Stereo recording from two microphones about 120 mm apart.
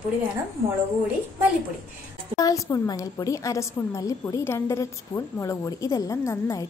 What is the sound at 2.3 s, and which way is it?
Speech, 30° left (ahead or behind).